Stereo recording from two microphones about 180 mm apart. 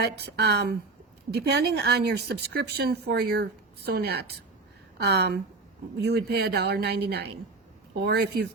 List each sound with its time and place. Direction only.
0.0 s a woman's voice: 70° right (ahead or behind)